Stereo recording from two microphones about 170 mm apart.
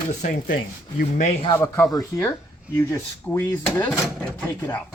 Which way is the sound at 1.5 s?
15° left (ahead or behind).